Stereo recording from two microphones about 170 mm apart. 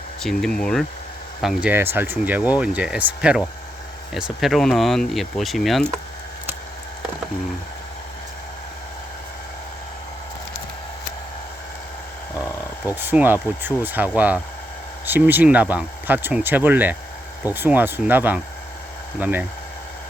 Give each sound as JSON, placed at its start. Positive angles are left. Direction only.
{"t": 0.2, "sound": "speech", "side_deg": 5}
{"t": 1.7, "sound": "speech", "side_deg": -15}
{"t": 13.0, "sound": "speech", "side_deg": -10}